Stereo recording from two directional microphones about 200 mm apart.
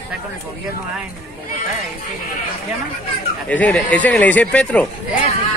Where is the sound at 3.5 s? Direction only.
5° left (ahead or behind).